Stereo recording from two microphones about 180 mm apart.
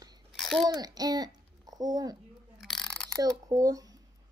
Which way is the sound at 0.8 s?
20° right (ahead or behind).